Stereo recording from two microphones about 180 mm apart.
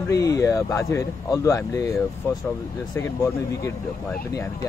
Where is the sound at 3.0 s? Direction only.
15° left (ahead or behind).